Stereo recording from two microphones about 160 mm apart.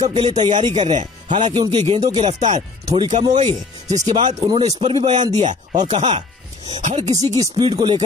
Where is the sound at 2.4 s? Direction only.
50° right (ahead or behind).